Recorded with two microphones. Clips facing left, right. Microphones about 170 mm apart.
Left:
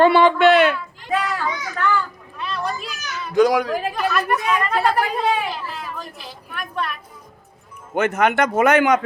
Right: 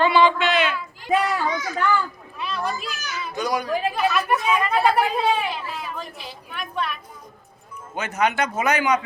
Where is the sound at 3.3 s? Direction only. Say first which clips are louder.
Left 10 dB; 90° left.